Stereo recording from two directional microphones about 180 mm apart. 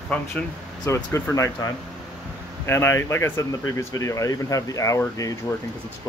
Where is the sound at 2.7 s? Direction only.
15° left (ahead or behind).